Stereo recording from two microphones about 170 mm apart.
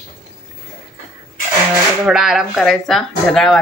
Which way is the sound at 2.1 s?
5° right (ahead or behind).